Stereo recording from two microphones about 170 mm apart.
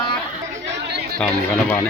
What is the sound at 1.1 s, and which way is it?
Speech, 5° left (ahead or behind).